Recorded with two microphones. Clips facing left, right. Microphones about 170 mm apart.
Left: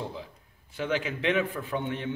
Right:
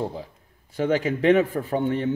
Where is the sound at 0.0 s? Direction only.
45° right (ahead or behind).